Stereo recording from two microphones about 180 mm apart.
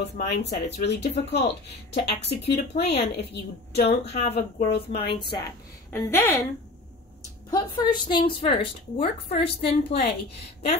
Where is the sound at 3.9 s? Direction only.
35° left (ahead or behind).